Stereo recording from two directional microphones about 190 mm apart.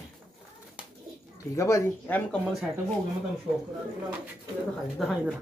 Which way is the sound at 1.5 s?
15° left (ahead or behind).